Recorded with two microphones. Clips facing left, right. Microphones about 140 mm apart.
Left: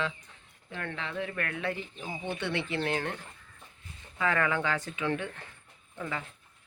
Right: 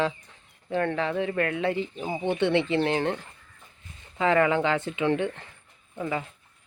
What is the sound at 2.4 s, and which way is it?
Speech, 25° right (ahead or behind).